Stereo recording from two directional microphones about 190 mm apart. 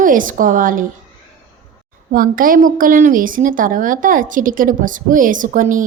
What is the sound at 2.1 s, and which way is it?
A woman's voice, 45° right (ahead or behind).